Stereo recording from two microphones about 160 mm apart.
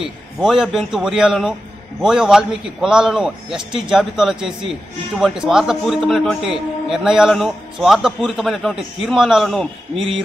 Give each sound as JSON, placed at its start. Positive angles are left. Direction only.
{"t": 0.0, "sound": "a man's voice", "side_deg": -5}
{"t": 9.9, "sound": "speech", "side_deg": -35}